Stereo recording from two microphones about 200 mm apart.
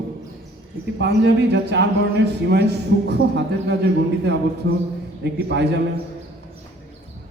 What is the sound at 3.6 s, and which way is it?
Speech, 55° right (ahead or behind).